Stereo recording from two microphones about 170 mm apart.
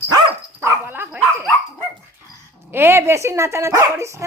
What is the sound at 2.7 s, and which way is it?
Speech, 15° right (ahead or behind).